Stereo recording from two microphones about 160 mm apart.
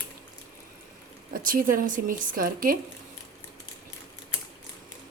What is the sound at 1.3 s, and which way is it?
Speech, 60° right (ahead or behind).